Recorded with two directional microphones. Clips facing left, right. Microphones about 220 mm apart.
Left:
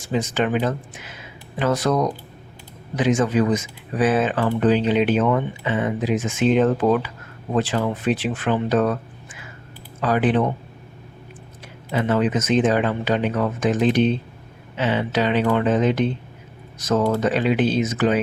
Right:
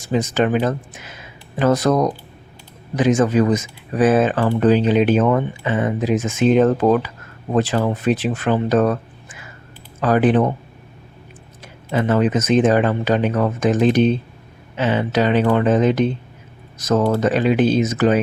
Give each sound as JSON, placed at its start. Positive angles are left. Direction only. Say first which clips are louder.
{"t": 0.0, "sound": "speech", "louder": "right 4 dB", "side_deg": -40}
{"t": 11.9, "sound": "speech", "louder": "right 3 dB", "side_deg": -45}